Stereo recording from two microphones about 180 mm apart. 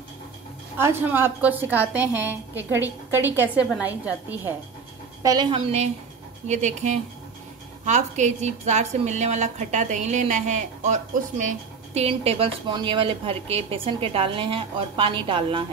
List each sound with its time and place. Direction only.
0.7 s a woman's voice: 15° right (ahead or behind)
5.2 s a woman's voice: 20° right (ahead or behind)
6.4 s a woman's voice: 40° right (ahead or behind)